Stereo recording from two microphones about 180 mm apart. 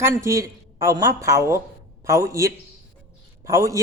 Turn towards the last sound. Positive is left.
turn(degrees=-15)  # may be behind; listen again after turning